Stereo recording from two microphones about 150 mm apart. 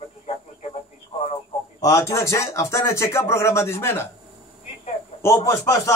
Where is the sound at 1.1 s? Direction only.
35° left (ahead or behind).